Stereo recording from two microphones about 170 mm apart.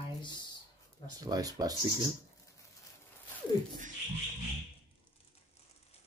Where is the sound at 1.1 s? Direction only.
20° right (ahead or behind).